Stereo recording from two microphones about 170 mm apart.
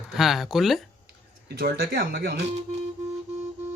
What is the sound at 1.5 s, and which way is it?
Speech, 60° right (ahead or behind).